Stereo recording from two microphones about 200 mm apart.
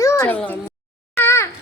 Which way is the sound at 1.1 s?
10° left (ahead or behind).